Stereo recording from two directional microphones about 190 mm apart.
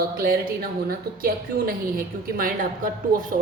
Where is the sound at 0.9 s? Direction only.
50° right (ahead or behind).